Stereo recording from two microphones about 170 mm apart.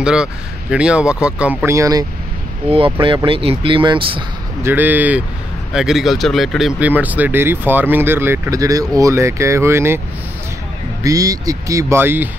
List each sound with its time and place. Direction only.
0.0 s speech: 5° right (ahead or behind)
2.7 s speech: 30° right (ahead or behind)
4.6 s speech: 10° right (ahead or behind)
11.1 s speech: 20° right (ahead or behind)